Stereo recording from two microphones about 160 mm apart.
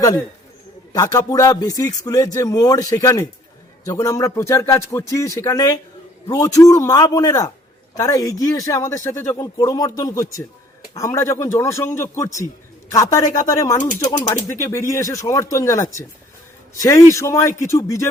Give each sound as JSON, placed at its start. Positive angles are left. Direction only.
{"t": 0.9, "sound": "speech", "side_deg": 20}